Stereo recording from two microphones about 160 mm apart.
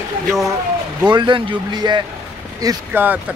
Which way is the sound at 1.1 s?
30° right (ahead or behind).